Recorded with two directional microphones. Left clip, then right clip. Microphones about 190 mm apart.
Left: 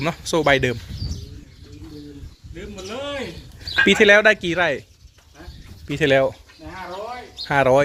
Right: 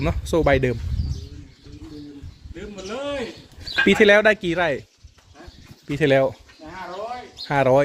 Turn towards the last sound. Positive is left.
turn(degrees=-5)  # may be behind; listen again after turning